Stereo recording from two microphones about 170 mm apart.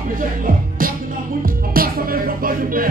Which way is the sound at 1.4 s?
60° right (ahead or behind).